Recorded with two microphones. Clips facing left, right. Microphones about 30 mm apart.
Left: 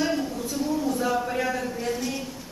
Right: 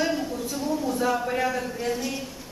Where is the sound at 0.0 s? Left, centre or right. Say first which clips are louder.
Even; centre.